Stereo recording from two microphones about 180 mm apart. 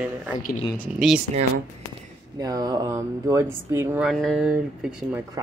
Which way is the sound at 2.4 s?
20° right (ahead or behind).